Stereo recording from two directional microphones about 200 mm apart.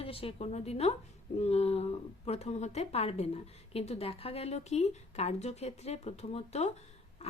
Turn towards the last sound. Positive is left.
turn(degrees=35)  # may be behind; listen again after turning